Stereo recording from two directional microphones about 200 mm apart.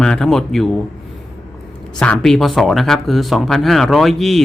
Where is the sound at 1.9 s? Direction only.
5° left (ahead or behind).